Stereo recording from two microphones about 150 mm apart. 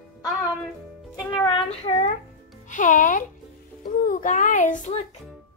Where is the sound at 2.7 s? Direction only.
60° left (ahead or behind).